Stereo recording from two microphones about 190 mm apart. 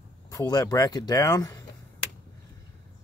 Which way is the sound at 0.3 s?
20° left (ahead or behind).